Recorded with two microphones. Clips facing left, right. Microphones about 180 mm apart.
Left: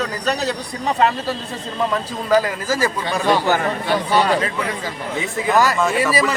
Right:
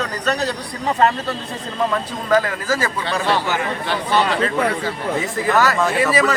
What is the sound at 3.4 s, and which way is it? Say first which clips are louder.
Speech: left 4 dB; 40° left (ahead or behind).